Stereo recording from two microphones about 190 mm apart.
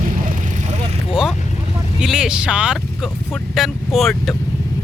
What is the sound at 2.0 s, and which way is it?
Speech, 5° right (ahead or behind).